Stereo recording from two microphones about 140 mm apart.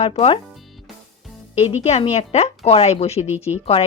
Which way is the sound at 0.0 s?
45° left (ahead or behind).